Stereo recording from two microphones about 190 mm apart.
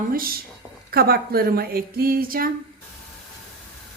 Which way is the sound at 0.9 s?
55° right (ahead or behind).